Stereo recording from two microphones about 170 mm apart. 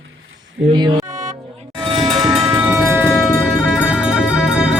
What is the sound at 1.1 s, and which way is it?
Music, 50° right (ahead or behind).